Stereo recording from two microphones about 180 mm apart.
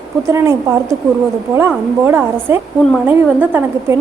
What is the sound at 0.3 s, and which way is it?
A woman's voice, 15° right (ahead or behind).